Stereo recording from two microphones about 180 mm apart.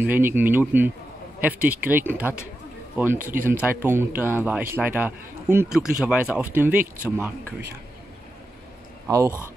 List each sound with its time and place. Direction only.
0.0 s speech: 10° right (ahead or behind)
9.0 s speech: 15° right (ahead or behind)